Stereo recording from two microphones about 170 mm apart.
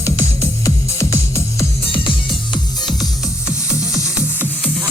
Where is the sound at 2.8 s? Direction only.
Centre (ahead or behind).